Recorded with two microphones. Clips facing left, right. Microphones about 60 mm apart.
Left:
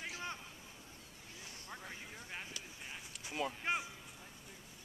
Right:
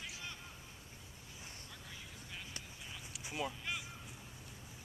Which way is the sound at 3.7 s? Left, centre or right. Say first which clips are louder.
Left 6 dB; left.